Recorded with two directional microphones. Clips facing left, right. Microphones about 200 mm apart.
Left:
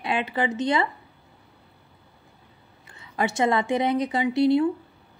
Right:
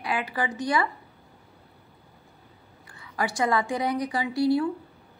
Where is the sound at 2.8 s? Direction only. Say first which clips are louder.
Left 3 dB; 25° left (ahead or behind).